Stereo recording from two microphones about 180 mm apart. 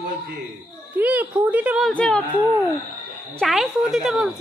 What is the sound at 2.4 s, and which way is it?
Speech, 20° right (ahead or behind).